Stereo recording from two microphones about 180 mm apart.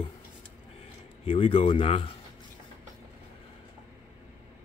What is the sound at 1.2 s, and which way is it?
Speech, 30° left (ahead or behind).